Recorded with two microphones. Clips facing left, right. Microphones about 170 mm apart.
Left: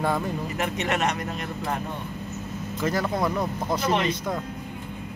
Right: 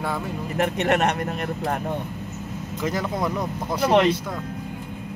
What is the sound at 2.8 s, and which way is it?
Speech, 20° right (ahead or behind).